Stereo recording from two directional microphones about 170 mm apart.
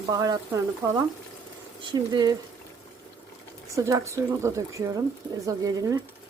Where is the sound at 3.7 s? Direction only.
20° right (ahead or behind).